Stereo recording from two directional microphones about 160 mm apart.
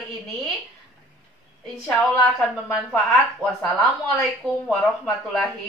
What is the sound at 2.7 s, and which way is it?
Speech, centre (ahead or behind).